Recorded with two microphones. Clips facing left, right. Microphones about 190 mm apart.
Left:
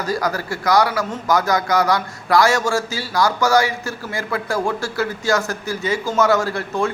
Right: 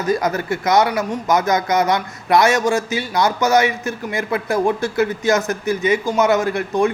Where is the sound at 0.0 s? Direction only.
20° right (ahead or behind).